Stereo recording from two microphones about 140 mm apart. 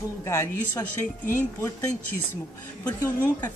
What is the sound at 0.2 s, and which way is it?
Speech, 20° left (ahead or behind).